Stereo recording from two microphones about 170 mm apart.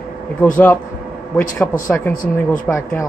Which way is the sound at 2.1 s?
50° left (ahead or behind).